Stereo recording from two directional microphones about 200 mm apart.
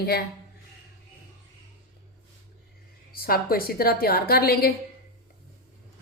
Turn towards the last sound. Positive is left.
turn(degrees=50)  # may be behind; listen again after turning